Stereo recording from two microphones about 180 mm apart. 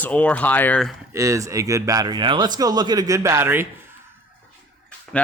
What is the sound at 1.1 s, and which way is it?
Speech, 20° right (ahead or behind).